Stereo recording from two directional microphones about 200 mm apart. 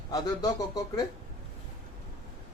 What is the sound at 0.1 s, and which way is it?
Speech, 20° left (ahead or behind).